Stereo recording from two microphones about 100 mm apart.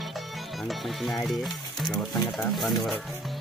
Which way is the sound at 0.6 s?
Centre (ahead or behind).